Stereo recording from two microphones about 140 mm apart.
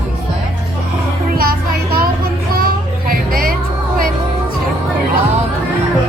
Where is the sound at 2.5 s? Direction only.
90° right.